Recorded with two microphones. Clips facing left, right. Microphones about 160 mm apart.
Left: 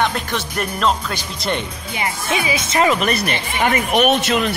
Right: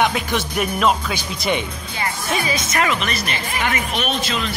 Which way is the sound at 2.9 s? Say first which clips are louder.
Left 5 dB; 40° left (ahead or behind).